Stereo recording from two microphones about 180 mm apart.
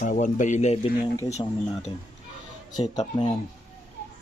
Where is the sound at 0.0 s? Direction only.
45° left (ahead or behind).